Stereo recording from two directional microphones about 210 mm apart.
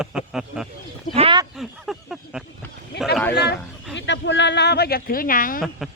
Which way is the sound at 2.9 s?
50° left (ahead or behind).